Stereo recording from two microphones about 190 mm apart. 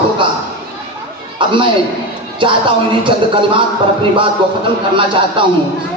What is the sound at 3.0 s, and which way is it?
Speech, 25° right (ahead or behind).